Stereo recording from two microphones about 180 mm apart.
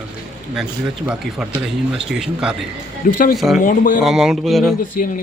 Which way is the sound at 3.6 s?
50° left (ahead or behind).